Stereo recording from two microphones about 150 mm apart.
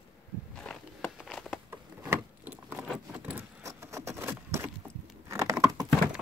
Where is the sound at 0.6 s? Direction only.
Centre (ahead or behind).